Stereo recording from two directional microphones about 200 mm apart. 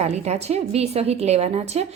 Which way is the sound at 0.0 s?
35° right (ahead or behind).